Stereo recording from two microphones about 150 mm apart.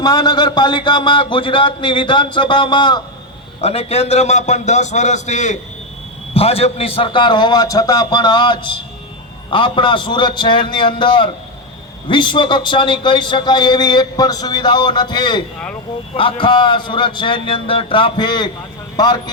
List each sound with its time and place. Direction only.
0.0 s a man's voice: 30° left (ahead or behind)
3.6 s a man's voice: 40° left (ahead or behind)
6.3 s a man's voice: 40° left (ahead or behind)